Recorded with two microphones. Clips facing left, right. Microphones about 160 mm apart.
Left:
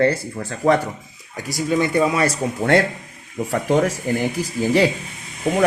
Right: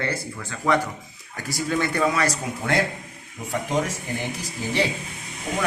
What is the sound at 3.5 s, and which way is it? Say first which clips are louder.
Speech: left 6 dB; 65° left (ahead or behind).